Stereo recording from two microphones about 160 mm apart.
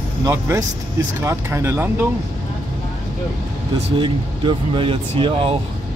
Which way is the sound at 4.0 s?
30° right (ahead or behind).